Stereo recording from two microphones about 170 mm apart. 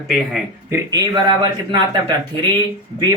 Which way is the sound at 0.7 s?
20° right (ahead or behind).